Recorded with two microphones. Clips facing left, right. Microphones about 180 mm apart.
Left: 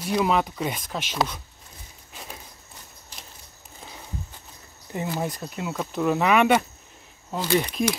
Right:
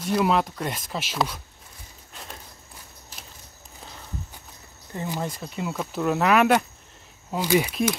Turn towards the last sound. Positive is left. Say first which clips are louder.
# right 1 dB
turn(degrees=-5)  # may be behind; listen again after turning